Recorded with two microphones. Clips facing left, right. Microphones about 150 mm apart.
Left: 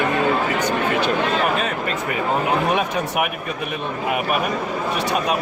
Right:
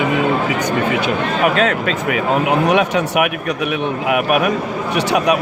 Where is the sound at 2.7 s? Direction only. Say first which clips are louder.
Right 6 dB; 75° right (ahead or behind).